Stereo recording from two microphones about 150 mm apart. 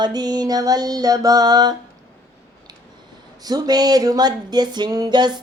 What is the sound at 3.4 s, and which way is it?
Music, 25° right (ahead or behind).